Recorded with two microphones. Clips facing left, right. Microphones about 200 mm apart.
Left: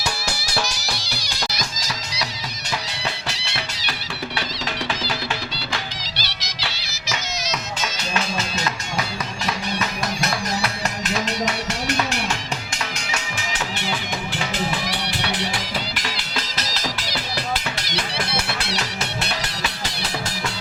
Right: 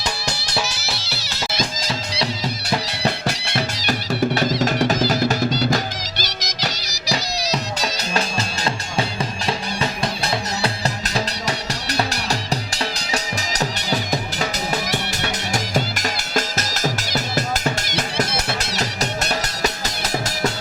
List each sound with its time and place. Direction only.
0.0 s music: 10° left (ahead or behind)
0.5 s music: 5° right (ahead or behind)
3.2 s music: 45° right (ahead or behind)